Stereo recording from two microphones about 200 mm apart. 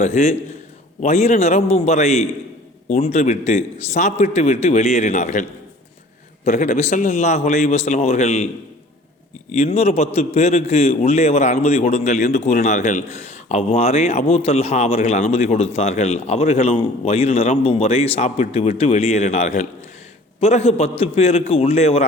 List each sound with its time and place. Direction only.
0.0 s a man's voice: 35° left (ahead or behind)
9.5 s a man's voice: 30° left (ahead or behind)